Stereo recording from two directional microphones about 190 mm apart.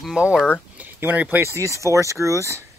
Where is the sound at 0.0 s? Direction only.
5° right (ahead or behind).